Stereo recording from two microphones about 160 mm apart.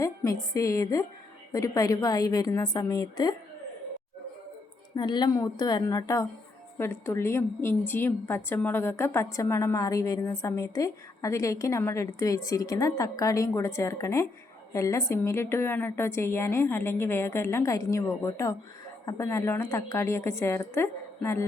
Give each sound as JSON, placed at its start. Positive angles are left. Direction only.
{"t": 0.0, "sound": "a sound", "side_deg": 20}
{"t": 0.5, "sound": "a woman's voice", "side_deg": 20}
{"t": 4.9, "sound": "a woman's voice", "side_deg": 30}